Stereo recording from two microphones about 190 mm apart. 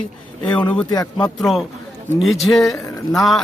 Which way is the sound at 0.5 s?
10° left (ahead or behind).